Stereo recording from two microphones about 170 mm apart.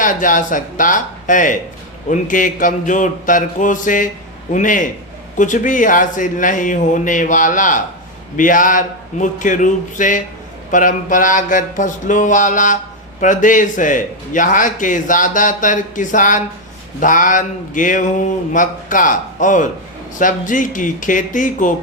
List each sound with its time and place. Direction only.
0.0 s a man's voice: 50° left (ahead or behind)